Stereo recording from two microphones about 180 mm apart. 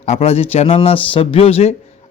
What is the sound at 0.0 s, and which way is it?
Speech, 35° left (ahead or behind).